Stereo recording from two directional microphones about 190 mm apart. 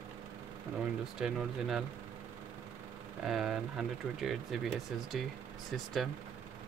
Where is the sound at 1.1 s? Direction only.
Centre (ahead or behind).